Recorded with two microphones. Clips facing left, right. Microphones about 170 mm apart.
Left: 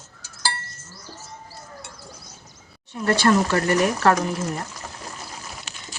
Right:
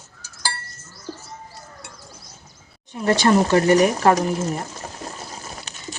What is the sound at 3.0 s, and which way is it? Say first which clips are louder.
Speech: right 2 dB; 20° right (ahead or behind).